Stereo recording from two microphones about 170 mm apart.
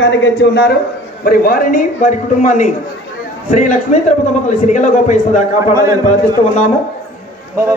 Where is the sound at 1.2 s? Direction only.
60° left (ahead or behind).